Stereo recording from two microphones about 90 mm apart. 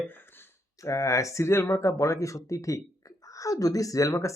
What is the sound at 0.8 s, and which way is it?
Speech, 35° left (ahead or behind).